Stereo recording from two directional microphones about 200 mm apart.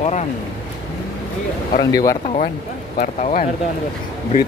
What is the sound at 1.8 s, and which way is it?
Speech, 15° left (ahead or behind).